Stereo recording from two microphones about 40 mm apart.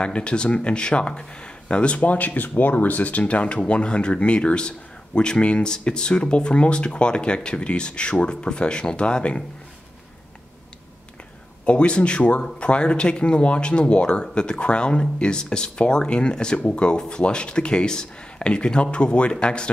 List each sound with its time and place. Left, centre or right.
0.0 s speech: left
11.6 s speech: left